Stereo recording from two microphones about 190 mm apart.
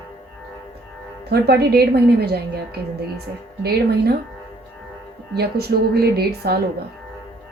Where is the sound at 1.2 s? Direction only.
60° right (ahead or behind).